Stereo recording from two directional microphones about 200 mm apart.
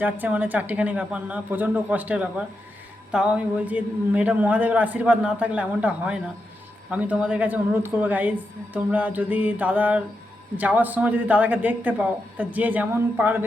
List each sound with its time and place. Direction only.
0.0 s a man's voice: 10° right (ahead or behind)